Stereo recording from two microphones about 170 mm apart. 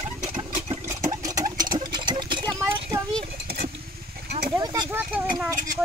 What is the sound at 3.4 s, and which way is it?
Vehicle, 65° right (ahead or behind).